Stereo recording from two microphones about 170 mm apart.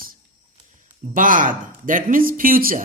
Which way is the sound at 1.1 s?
55° right (ahead or behind).